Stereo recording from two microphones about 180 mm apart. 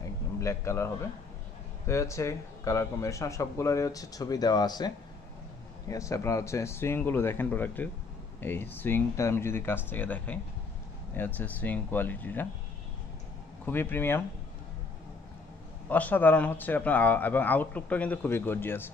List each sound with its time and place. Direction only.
0.0 s a sound: 15° left (ahead or behind)
1.9 s speech: 15° left (ahead or behind)
13.7 s speech: 10° left (ahead or behind)
15.9 s speech: 10° left (ahead or behind)